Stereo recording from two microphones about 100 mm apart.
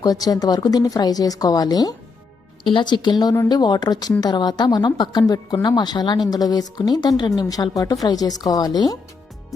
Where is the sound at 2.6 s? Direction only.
50° left (ahead or behind).